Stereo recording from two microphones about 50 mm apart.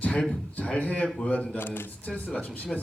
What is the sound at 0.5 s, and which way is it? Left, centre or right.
A man's voice, left.